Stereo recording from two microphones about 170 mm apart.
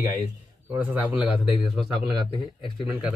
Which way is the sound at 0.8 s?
10° right (ahead or behind).